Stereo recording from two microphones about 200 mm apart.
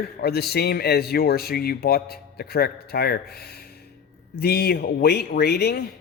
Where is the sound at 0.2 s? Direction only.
50° left (ahead or behind).